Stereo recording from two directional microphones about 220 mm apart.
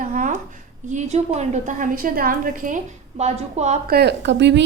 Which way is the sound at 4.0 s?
50° right (ahead or behind).